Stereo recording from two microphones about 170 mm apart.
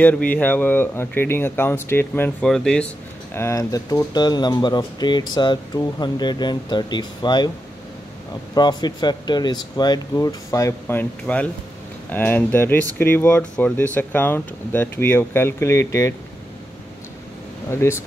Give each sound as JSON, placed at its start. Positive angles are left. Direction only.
{"t": 0.0, "sound": "speech", "side_deg": 10}
{"t": 3.3, "sound": "speech", "side_deg": 15}
{"t": 8.5, "sound": "speech", "side_deg": 25}
{"t": 17.6, "sound": "speech", "side_deg": 15}